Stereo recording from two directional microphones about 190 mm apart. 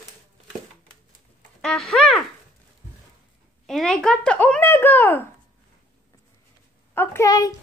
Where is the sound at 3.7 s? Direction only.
5° left (ahead or behind).